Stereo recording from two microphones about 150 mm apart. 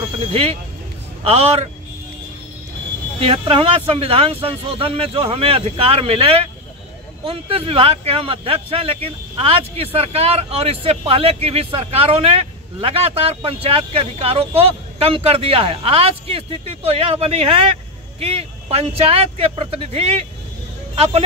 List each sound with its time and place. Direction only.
0.3 s speech: 40° right (ahead or behind)
3.2 s speech: 40° right (ahead or behind)